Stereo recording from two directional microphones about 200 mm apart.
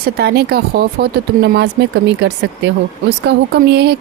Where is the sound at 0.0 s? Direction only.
55° right (ahead or behind).